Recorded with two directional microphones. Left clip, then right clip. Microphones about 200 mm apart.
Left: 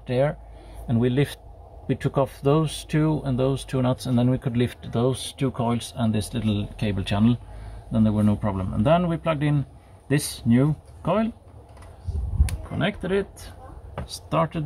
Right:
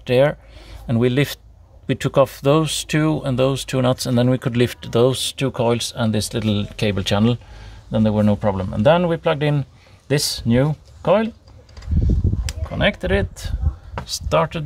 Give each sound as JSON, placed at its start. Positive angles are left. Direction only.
{"t": 0.0, "sound": "speech", "side_deg": -45}
{"t": 12.7, "sound": "speech", "side_deg": -45}